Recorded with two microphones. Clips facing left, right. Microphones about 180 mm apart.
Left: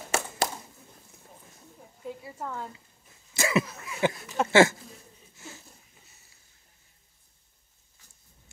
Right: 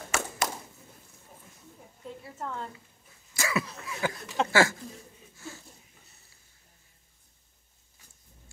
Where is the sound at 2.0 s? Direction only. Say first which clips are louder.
Left 2 dB; 5° left (ahead or behind).